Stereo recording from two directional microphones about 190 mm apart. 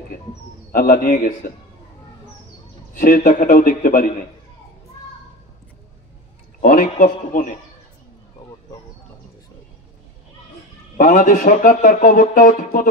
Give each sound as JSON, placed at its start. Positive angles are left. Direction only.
{"t": 0.7, "sound": "speech", "side_deg": 45}
{"t": 2.9, "sound": "speech", "side_deg": 45}
{"t": 6.6, "sound": "speech", "side_deg": 45}
{"t": 11.0, "sound": "speech", "side_deg": 45}